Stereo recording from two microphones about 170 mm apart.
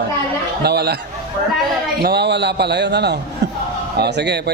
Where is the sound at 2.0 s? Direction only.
75° right (ahead or behind).